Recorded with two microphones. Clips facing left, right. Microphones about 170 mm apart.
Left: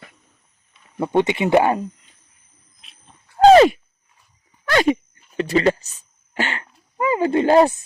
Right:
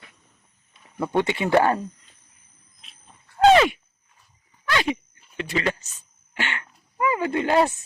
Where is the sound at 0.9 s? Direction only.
20° left (ahead or behind).